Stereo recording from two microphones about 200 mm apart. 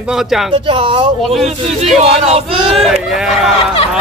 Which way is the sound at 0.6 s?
25° right (ahead or behind).